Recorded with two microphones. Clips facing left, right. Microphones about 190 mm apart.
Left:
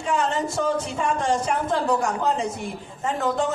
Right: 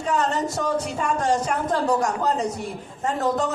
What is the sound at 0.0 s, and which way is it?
A man's voice, 40° right (ahead or behind).